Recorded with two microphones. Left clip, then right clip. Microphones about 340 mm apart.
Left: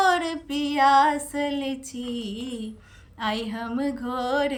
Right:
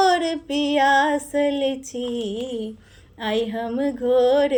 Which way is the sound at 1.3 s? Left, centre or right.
Centre.